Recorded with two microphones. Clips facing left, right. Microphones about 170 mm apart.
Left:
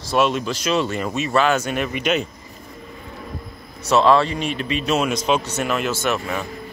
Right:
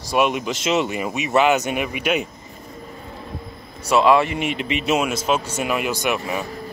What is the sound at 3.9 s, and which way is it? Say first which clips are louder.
Speech: even; 10° right (ahead or behind).